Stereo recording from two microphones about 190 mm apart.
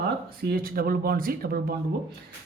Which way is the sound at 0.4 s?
50° right (ahead or behind).